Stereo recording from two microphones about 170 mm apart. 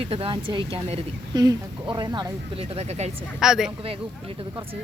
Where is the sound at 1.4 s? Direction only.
20° right (ahead or behind); by 3.1 s 40° right (ahead or behind).